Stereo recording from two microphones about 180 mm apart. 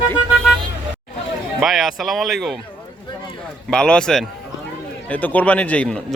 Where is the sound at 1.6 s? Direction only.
Centre (ahead or behind).